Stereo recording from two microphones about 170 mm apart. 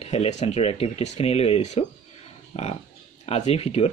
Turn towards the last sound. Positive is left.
turn(degrees=35)  # may be behind; listen again after turning